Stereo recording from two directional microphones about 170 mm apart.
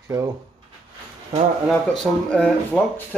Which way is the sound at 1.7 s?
5° left (ahead or behind).